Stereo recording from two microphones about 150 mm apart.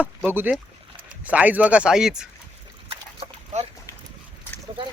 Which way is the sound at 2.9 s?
40° right (ahead or behind).